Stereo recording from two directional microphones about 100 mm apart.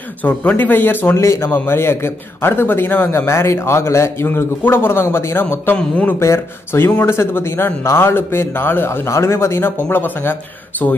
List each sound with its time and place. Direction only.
0.2 s a man's voice: 15° left (ahead or behind)
6.1 s a man's voice: 25° left (ahead or behind)